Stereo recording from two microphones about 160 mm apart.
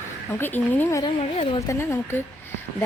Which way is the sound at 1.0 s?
35° left (ahead or behind).